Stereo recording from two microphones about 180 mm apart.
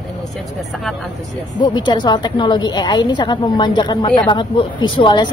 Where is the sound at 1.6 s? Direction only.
25° left (ahead or behind).